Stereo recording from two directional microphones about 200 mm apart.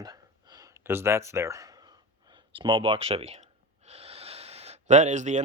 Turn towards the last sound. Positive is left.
turn(degrees=-35)  # may be behind; listen again after turning